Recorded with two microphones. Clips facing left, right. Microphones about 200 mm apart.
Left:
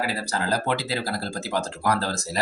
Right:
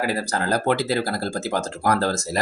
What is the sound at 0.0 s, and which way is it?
Speech, 50° right (ahead or behind).